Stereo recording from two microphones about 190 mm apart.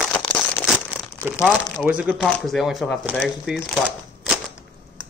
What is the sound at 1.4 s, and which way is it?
Speech, 5° right (ahead or behind).